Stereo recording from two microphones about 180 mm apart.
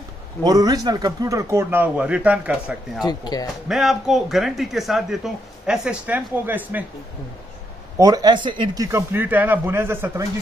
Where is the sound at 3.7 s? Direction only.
Centre (ahead or behind).